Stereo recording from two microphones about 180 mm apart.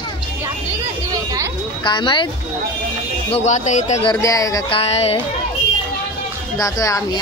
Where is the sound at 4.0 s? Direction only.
20° left (ahead or behind).